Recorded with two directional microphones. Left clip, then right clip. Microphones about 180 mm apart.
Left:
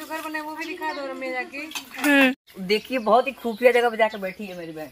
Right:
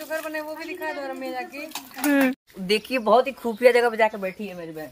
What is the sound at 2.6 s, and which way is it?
Speech, 15° right (ahead or behind).